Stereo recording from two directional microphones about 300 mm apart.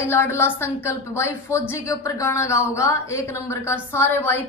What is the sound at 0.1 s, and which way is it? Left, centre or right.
Speech, centre.